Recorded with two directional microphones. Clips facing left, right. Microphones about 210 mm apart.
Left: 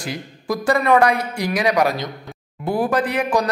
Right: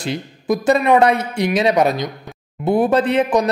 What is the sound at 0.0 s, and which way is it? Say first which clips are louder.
Speech: right 5 dB; 25° right (ahead or behind).